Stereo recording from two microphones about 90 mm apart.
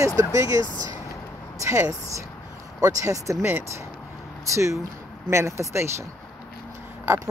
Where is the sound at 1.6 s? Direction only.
35° right (ahead or behind).